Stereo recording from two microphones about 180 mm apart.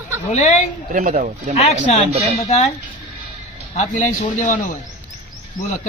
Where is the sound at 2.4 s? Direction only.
35° left (ahead or behind).